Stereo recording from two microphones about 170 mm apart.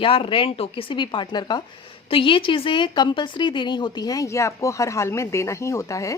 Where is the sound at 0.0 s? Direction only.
30° left (ahead or behind).